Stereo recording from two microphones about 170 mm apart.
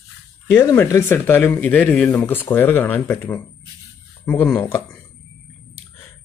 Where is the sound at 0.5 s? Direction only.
15° left (ahead or behind).